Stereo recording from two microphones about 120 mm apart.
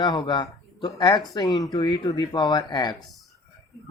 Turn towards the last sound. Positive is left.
turn(degrees=35)  # may be behind; listen again after turning